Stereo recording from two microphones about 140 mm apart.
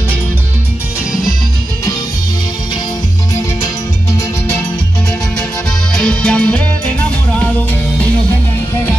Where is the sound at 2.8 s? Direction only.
25° left (ahead or behind).